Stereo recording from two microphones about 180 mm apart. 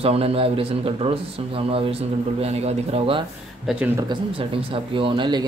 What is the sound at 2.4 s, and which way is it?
Speech, 35° right (ahead or behind).